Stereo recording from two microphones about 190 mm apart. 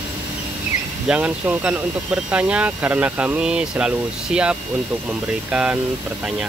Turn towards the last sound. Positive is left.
turn(degrees=-5)  # may be behind; listen again after turning